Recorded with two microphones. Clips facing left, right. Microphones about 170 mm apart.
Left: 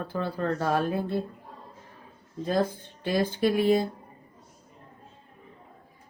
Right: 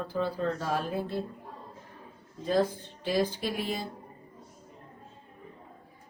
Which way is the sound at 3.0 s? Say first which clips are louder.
Left 4 dB; 55° left (ahead or behind).